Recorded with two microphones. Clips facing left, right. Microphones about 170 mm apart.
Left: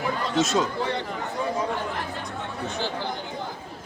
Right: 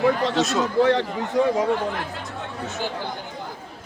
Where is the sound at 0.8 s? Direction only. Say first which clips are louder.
Right 10 dB; 85° right.